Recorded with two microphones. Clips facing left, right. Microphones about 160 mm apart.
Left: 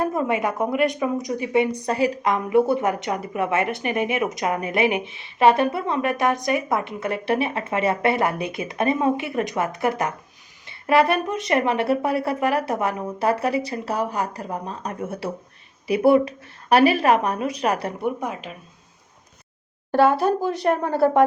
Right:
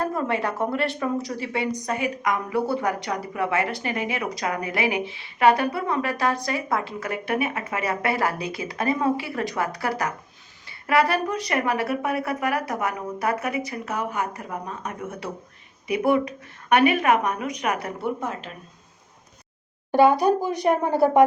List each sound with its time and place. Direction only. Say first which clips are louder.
0.0 s a woman's voice: left 3 dB; 20° left (ahead or behind)
18.0 s speech: left 2 dB; 15° left (ahead or behind)
20.4 s a woman's voice: even; 15° right (ahead or behind)